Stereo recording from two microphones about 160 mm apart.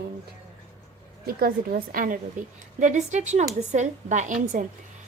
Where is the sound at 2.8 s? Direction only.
50° right (ahead or behind).